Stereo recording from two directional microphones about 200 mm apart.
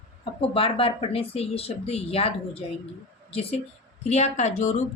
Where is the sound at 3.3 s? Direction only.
30° left (ahead or behind).